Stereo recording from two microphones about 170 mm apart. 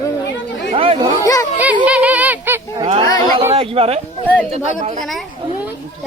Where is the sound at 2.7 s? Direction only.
30° right (ahead or behind).